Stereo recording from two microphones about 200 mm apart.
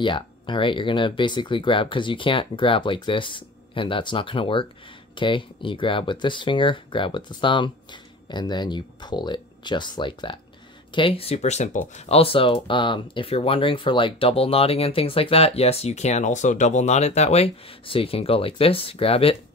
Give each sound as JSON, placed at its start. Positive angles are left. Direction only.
{"t": 0.0, "sound": "speech", "side_deg": 25}